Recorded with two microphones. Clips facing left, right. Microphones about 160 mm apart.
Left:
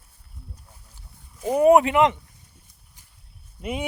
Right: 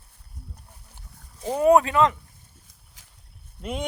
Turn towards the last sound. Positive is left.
turn(degrees=10)  # may be behind; listen again after turning